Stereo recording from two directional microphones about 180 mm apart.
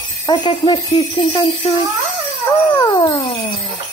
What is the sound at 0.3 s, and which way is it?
Speech, 25° left (ahead or behind).